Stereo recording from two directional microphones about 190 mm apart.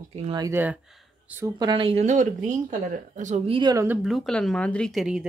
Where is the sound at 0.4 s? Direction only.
10° right (ahead or behind).